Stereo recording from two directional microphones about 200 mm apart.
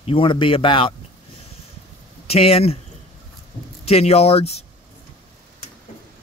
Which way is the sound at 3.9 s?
30° left (ahead or behind).